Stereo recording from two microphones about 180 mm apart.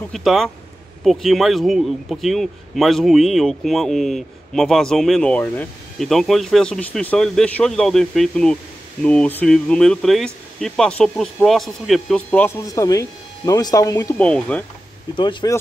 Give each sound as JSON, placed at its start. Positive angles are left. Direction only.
{"t": 0.1, "sound": "a man's voice", "side_deg": 0}
{"t": 14.1, "sound": "speech", "side_deg": 5}
{"t": 15.1, "sound": "speech", "side_deg": 25}